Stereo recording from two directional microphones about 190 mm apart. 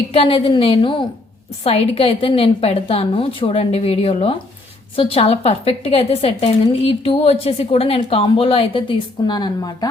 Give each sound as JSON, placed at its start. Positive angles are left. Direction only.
{"t": 0.1, "sound": "a woman's voice", "side_deg": 30}